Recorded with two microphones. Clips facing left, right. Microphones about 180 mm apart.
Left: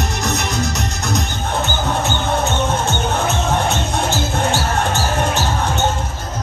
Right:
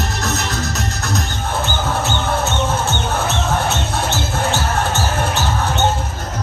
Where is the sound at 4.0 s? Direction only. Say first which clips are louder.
Left 1 dB; 15° left (ahead or behind).